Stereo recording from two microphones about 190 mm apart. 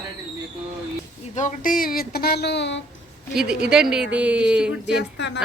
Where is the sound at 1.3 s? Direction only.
40° left (ahead or behind); by 2.8 s 70° left (ahead or behind).